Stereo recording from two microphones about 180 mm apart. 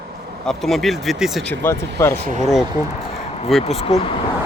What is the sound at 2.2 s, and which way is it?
Speech, 45° right (ahead or behind).